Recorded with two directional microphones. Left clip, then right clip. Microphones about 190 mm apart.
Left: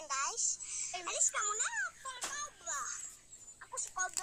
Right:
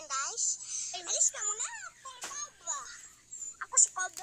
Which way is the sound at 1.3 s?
30° left (ahead or behind).